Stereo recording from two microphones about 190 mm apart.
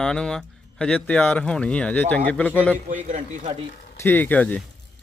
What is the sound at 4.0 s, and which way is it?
Speech, 10° left (ahead or behind).